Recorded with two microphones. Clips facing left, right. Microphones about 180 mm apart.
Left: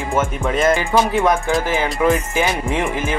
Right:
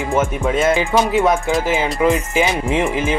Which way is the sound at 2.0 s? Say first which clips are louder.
Even; 15° right (ahead or behind).